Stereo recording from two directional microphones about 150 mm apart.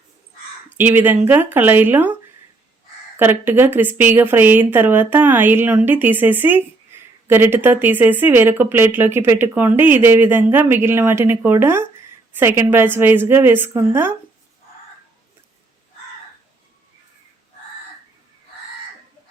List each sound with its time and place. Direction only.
0.8 s speech: 10° right (ahead or behind)
3.2 s speech: 15° right (ahead or behind)